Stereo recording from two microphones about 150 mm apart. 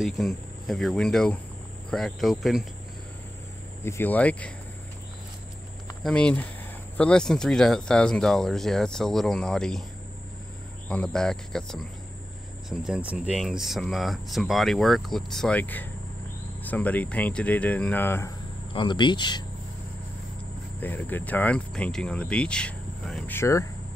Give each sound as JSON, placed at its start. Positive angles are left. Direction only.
{"t": 0.0, "sound": "speech", "side_deg": 0}
{"t": 3.8, "sound": "speech", "side_deg": 10}
{"t": 6.0, "sound": "speech", "side_deg": 5}
{"t": 10.9, "sound": "speech", "side_deg": 5}
{"t": 18.7, "sound": "speech", "side_deg": 30}
{"t": 20.8, "sound": "speech", "side_deg": 10}
{"t": 23.3, "sound": "speech", "side_deg": 20}